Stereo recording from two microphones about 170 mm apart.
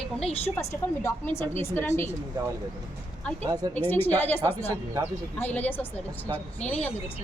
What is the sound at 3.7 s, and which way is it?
Speech, 10° left (ahead or behind).